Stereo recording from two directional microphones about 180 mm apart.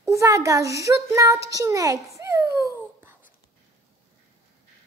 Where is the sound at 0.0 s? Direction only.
15° right (ahead or behind).